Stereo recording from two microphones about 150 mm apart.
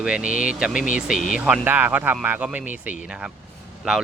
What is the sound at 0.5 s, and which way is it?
Speech, 5° right (ahead or behind).